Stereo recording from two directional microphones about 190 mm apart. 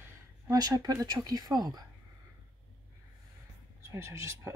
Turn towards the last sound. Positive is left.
turn(degrees=-15)  # may be behind; listen again after turning